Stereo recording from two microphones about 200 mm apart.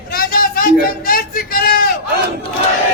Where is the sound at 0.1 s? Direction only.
45° left (ahead or behind).